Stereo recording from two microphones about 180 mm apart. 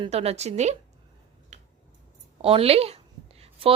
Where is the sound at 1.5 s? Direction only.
40° right (ahead or behind).